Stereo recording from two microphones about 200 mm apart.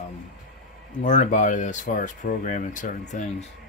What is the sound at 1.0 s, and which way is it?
Speech, 40° left (ahead or behind).